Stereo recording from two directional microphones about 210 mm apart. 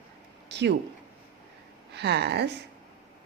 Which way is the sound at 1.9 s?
55° right (ahead or behind).